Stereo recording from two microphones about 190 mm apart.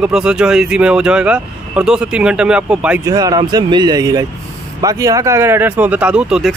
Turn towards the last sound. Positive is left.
turn(degrees=-5)  # may be behind; listen again after turning